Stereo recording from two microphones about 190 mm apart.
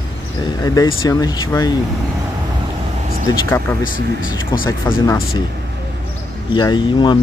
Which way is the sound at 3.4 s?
10° left (ahead or behind).